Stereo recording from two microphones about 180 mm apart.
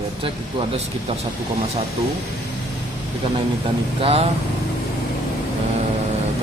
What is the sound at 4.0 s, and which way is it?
Speech, 35° right (ahead or behind).